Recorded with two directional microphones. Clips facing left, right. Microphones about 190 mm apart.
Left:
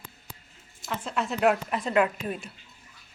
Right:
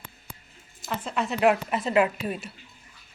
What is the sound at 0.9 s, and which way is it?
Speech, centre (ahead or behind).